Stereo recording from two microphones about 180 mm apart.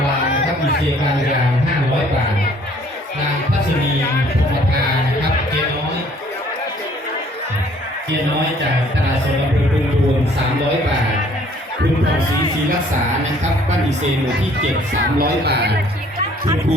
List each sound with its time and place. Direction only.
15.2 s speech: 65° right (ahead or behind)